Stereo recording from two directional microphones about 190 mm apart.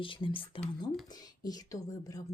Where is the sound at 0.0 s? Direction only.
25° left (ahead or behind).